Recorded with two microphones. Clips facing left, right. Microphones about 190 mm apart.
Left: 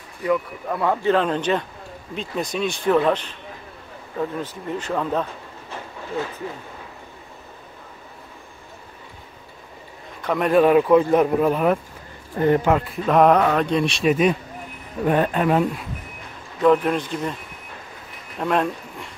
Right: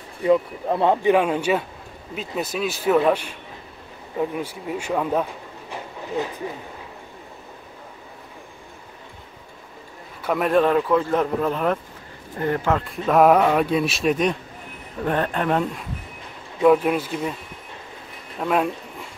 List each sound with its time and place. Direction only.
0.2 s speech: 25° right (ahead or behind)
1.0 s a man's voice: 10° right (ahead or behind)
10.2 s speech: centre (ahead or behind)
10.6 s speech: 15° left (ahead or behind)
12.8 s speech: centre (ahead or behind)
16.6 s a man's voice: 10° right (ahead or behind)
18.4 s speech: 5° right (ahead or behind)